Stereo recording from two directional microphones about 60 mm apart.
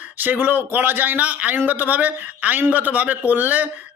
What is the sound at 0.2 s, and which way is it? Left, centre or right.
Speech, right.